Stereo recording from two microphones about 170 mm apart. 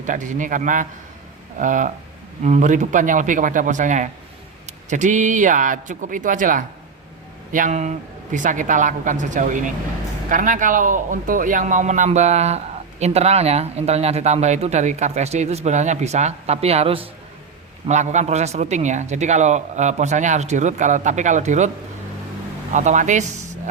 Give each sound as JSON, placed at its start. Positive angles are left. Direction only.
{"t": 0.0, "sound": "a man's voice", "side_deg": -45}
{"t": 22.7, "sound": "speech", "side_deg": -45}